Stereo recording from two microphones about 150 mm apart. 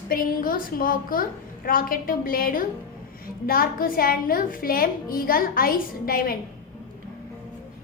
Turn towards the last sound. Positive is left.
turn(degrees=75)  # may be behind; listen again after turning